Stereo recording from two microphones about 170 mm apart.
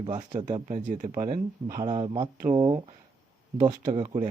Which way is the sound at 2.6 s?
35° right (ahead or behind).